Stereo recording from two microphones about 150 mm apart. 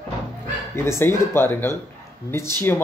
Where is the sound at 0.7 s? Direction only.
15° left (ahead or behind).